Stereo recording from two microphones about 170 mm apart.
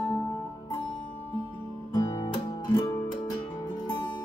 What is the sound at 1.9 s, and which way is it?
Guitar, 20° left (ahead or behind).